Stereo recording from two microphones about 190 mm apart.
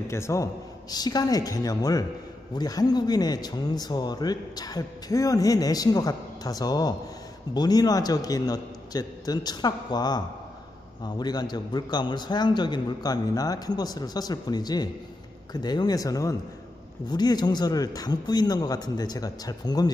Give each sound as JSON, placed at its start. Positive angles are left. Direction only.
{"t": 0.1, "sound": "speech", "side_deg": 15}